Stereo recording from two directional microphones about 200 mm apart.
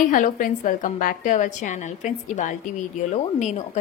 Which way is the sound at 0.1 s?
40° left (ahead or behind).